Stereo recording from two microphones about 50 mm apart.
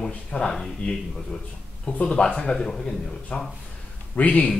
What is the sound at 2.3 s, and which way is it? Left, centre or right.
Speech, centre.